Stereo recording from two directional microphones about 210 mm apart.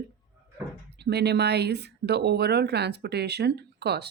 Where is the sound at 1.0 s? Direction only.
50° right (ahead or behind).